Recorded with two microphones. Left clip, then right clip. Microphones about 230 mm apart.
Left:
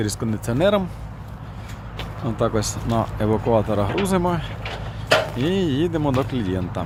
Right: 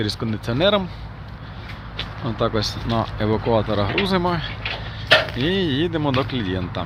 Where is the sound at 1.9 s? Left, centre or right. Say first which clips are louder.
Right 1 dB; centre.